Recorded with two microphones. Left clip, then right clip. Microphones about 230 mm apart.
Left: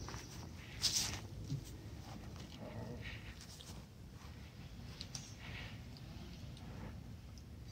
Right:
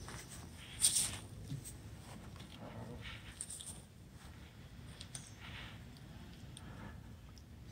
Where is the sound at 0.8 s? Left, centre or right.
Right.